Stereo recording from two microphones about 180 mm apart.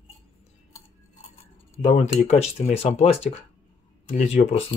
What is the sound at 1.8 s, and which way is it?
Speech, 40° left (ahead or behind).